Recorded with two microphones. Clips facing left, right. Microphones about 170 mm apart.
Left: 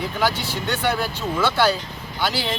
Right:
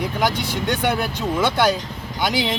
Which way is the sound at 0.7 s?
15° right (ahead or behind).